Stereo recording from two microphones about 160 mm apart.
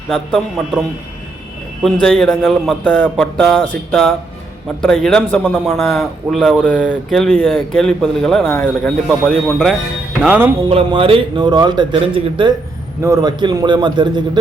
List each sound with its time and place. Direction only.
0.1 s a man's voice: 5° right (ahead or behind)
1.8 s a man's voice: centre (ahead or behind)
2.8 s speech: 10° left (ahead or behind)
3.3 s a man's voice: centre (ahead or behind)
4.8 s a man's voice: 5° left (ahead or behind)
6.6 s speech: 10° left (ahead or behind)
7.1 s a man's voice: centre (ahead or behind)
10.2 s music: 10° right (ahead or behind)
10.7 s a man's voice: 35° right (ahead or behind)
13.0 s a man's voice: 20° right (ahead or behind)